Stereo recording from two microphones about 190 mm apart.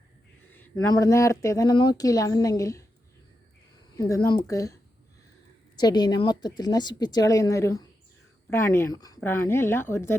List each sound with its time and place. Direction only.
0.5 s speech: 10° left (ahead or behind)
3.9 s speech: 15° left (ahead or behind)